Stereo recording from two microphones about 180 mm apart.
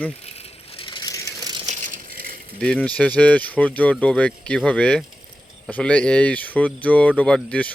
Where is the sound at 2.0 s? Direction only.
55° right (ahead or behind).